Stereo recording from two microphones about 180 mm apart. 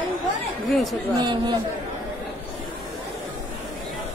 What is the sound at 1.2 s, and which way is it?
Speech, 25° right (ahead or behind).